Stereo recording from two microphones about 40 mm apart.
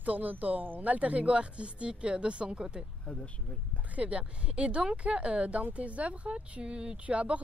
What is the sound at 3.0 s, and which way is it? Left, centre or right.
Speech, left.